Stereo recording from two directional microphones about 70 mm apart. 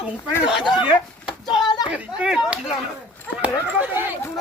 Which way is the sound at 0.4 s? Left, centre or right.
Centre.